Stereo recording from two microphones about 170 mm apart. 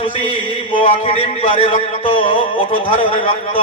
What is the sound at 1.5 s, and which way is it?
A man's voice, 30° left (ahead or behind).